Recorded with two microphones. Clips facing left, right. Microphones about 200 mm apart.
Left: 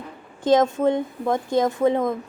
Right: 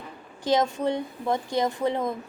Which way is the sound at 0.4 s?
50° left (ahead or behind).